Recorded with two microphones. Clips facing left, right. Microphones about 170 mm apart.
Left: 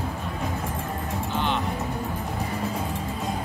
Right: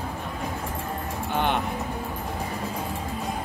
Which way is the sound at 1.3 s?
55° right (ahead or behind).